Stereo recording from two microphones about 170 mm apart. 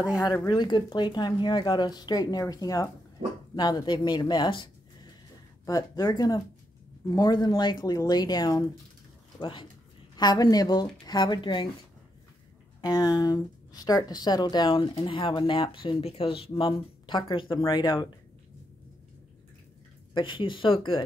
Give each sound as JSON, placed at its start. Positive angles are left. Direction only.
{"t": 0.0, "sound": "speech", "side_deg": 20}
{"t": 5.7, "sound": "speech", "side_deg": 20}
{"t": 12.8, "sound": "speech", "side_deg": 20}
{"t": 20.2, "sound": "speech", "side_deg": 30}